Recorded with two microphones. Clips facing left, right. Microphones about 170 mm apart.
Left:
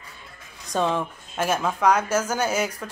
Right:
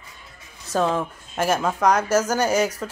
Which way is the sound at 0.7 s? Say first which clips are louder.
Right 2 dB; 5° right (ahead or behind).